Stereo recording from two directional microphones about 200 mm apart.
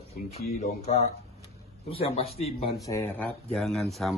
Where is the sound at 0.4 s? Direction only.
45° left (ahead or behind).